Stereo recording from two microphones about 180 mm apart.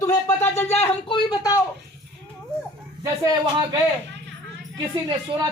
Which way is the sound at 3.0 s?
20° right (ahead or behind).